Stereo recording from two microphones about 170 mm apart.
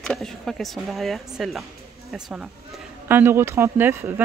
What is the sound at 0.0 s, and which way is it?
Speech, 5° left (ahead or behind).